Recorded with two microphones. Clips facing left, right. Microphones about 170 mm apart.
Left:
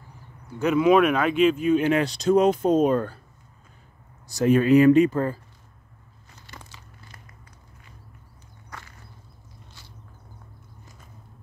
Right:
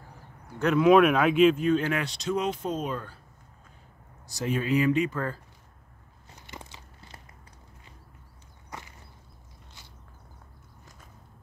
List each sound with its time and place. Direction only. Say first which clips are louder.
0.6 s speech: left 1 dB; 5° left (ahead or behind)
1.8 s speech: left 7 dB; 25° left (ahead or behind)
2.0 s speech: left 10 dB; 40° left (ahead or behind)
4.3 s speech: left 10 dB; 55° left (ahead or behind)
6.4 s biting: right 2 dB; 20° right (ahead or behind)
8.6 s walk: right 1 dB; 20° right (ahead or behind)